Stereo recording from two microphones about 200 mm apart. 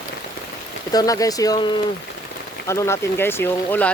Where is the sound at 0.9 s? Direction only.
15° left (ahead or behind).